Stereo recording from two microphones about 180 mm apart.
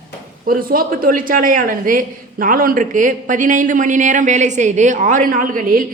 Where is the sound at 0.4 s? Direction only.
50° right (ahead or behind).